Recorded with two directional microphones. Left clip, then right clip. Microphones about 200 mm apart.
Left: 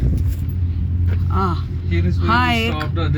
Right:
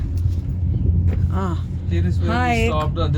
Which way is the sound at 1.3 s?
10° right (ahead or behind).